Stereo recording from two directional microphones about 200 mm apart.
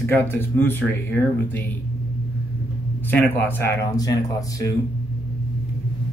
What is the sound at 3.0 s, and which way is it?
Speech, 10° left (ahead or behind).